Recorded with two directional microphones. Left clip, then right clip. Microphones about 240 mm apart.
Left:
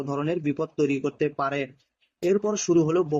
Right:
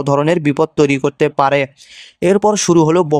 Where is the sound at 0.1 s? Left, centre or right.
Right.